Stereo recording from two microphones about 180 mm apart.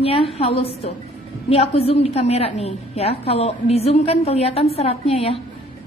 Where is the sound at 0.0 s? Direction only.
35° left (ahead or behind).